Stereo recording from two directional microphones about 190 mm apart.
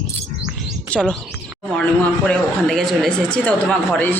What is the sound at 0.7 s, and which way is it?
Chirp, 5° left (ahead or behind).